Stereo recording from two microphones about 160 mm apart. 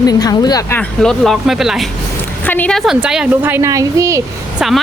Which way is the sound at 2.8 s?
5° right (ahead or behind).